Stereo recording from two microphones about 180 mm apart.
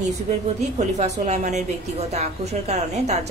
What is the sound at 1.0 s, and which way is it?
A woman's voice, 40° right (ahead or behind).